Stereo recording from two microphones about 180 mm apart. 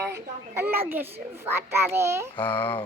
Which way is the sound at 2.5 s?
10° left (ahead or behind).